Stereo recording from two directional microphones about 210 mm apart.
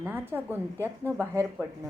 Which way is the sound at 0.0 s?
10° right (ahead or behind).